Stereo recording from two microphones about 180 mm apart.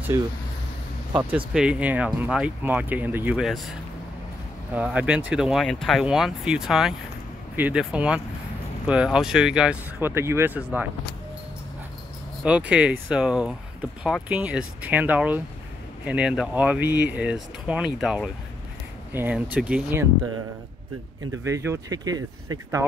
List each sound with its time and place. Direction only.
0.1 s speech: 15° right (ahead or behind)
1.3 s speech: 5° right (ahead or behind)
4.7 s speech: 10° right (ahead or behind)
12.4 s speech: 5° right (ahead or behind)
21.5 s speech: 15° right (ahead or behind)